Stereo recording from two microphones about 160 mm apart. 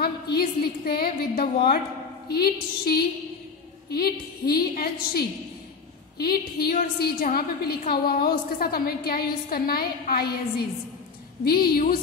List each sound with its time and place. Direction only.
0.0 s a woman's voice: 75° left (ahead or behind)
6.1 s a woman's voice: 75° left (ahead or behind)
11.4 s a woman's voice: 70° left (ahead or behind)